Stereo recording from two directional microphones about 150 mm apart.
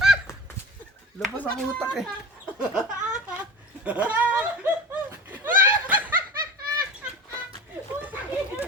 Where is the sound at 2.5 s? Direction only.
5° right (ahead or behind).